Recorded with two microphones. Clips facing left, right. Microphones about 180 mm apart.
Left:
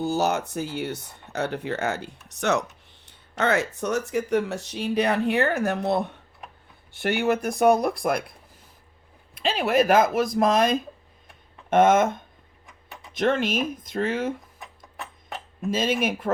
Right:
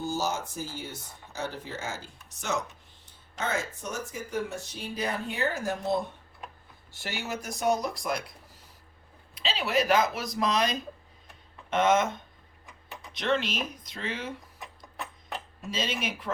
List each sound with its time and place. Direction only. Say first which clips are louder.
0.0 s speech: left 7 dB; 65° left (ahead or behind)
9.3 s speech: left 6 dB; 50° left (ahead or behind)
15.7 s speech: left 8 dB; 50° left (ahead or behind)